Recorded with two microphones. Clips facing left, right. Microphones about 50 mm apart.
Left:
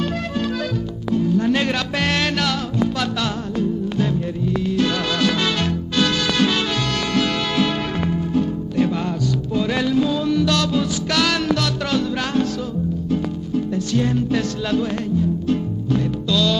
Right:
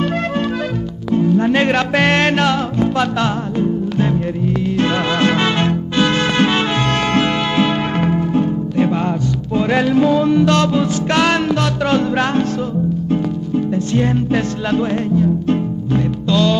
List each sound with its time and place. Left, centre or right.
1.1 s music: right
13.9 s music: right